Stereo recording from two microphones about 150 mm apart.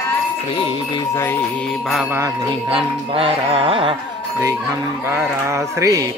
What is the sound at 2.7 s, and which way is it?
Speech, 40° right (ahead or behind).